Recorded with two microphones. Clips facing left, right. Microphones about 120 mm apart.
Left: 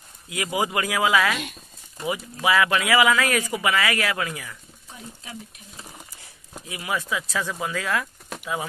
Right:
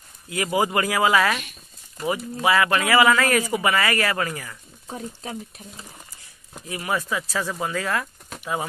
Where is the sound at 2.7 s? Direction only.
35° right (ahead or behind).